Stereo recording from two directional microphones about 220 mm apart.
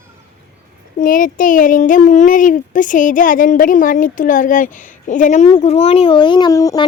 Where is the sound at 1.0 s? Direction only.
40° left (ahead or behind).